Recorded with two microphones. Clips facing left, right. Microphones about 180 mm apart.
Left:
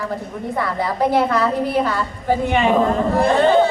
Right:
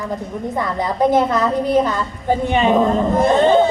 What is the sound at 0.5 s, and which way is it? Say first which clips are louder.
A woman's voice: even; 20° right (ahead or behind).